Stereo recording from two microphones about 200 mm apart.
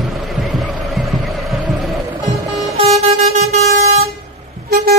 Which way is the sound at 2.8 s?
30° right (ahead or behind).